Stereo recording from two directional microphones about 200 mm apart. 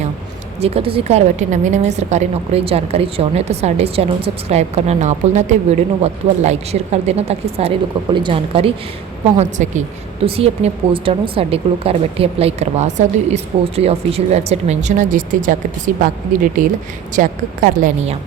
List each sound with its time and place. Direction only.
0.6 s a woman's voice: 30° right (ahead or behind)